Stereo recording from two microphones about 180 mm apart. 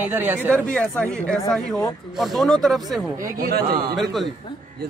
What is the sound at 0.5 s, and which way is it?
Speech, 5° left (ahead or behind).